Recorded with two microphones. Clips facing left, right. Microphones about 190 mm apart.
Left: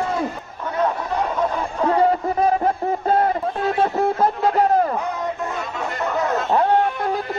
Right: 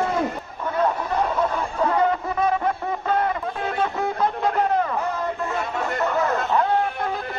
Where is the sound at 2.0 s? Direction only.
35° left (ahead or behind).